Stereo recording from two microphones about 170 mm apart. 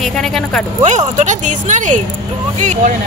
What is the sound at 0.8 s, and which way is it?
Speech, 45° right (ahead or behind).